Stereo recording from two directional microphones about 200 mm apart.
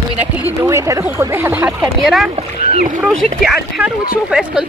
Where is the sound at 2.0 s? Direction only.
Centre (ahead or behind).